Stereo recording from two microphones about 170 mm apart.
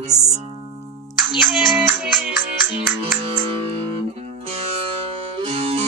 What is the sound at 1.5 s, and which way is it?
Speech, 10° right (ahead or behind).